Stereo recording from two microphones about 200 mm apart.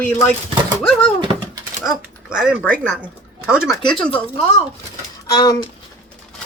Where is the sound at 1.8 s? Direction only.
Centre (ahead or behind).